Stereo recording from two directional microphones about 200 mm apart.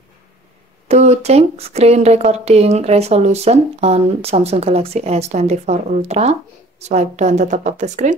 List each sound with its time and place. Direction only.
0.8 s speech: 35° right (ahead or behind)